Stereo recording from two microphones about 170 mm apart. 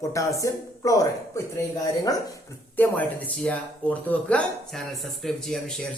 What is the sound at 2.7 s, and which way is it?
Speech, 10° left (ahead or behind).